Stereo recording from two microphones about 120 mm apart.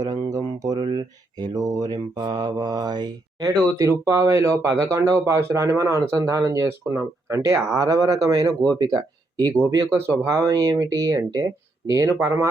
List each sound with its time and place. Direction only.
0.0 s speech: 30° right (ahead or behind)
9.6 s speech: 25° right (ahead or behind)